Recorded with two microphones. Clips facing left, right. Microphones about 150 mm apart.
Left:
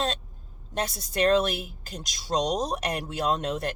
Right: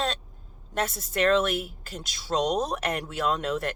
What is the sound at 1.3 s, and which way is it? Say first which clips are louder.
Speech: even; 35° left (ahead or behind).